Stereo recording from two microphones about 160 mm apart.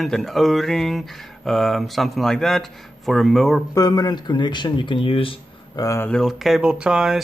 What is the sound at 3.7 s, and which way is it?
Speech, 25° left (ahead or behind).